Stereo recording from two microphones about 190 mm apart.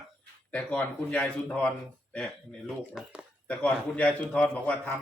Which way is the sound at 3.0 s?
5° right (ahead or behind).